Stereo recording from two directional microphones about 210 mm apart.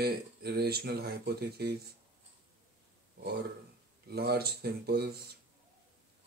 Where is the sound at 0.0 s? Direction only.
50° right (ahead or behind).